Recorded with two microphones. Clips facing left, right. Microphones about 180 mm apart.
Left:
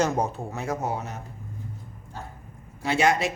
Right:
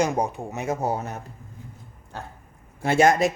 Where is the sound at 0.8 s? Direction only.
35° right (ahead or behind).